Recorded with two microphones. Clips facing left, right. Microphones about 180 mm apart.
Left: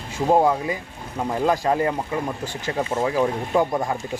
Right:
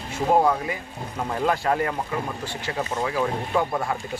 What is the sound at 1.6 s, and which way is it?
Speech, 20° left (ahead or behind).